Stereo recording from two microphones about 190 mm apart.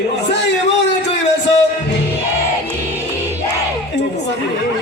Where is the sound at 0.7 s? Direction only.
65° left (ahead or behind).